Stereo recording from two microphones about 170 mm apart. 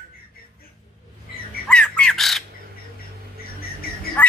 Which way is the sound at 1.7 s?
5° left (ahead or behind).